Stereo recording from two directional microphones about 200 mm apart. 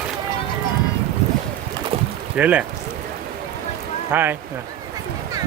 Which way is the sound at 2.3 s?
5° right (ahead or behind).